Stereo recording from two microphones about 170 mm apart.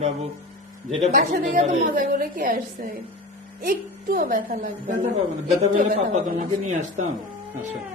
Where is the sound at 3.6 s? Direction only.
60° right (ahead or behind); by 6.2 s 40° right (ahead or behind).